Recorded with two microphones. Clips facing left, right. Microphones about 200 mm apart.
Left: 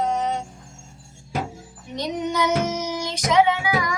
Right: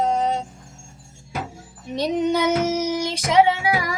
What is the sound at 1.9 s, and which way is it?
Music, 30° right (ahead or behind).